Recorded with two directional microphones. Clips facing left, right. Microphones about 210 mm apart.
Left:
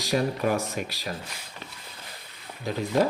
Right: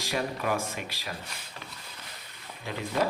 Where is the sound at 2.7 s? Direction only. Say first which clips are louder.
Left 5 dB; 40° left (ahead or behind).